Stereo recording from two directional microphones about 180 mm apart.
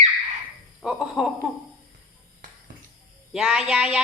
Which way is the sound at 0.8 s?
Centre (ahead or behind).